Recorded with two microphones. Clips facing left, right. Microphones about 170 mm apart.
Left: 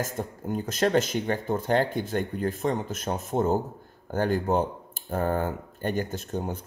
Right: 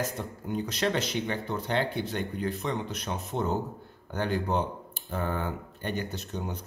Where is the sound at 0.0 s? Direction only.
45° left (ahead or behind).